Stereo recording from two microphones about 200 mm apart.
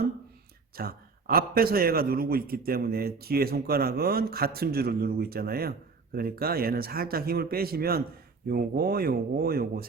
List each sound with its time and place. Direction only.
0.8 s a man's voice: 50° right (ahead or behind)